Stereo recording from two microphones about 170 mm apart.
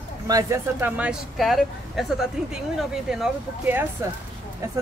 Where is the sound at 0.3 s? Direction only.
20° right (ahead or behind).